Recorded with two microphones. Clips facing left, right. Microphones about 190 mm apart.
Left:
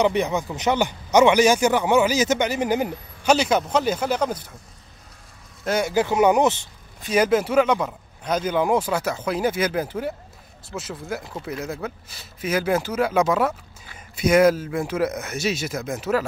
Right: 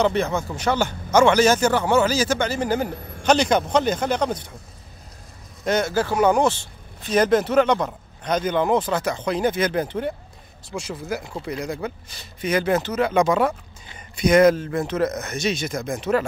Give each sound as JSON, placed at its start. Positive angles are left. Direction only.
{"t": 0.0, "sound": "speech", "side_deg": 15}
{"t": 3.3, "sound": "a man's voice", "side_deg": 5}
{"t": 5.6, "sound": "a man's voice", "side_deg": 10}